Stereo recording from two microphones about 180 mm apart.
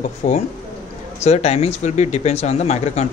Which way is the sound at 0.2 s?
40° left (ahead or behind).